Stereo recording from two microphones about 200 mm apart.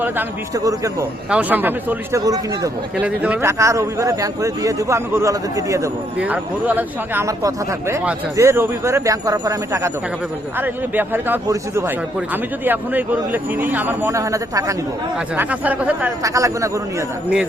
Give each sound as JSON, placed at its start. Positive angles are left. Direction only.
{"t": 0.0, "sound": "a man's voice", "side_deg": -15}